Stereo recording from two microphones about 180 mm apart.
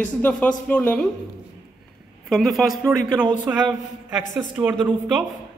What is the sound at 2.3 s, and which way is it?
A man's voice, centre (ahead or behind).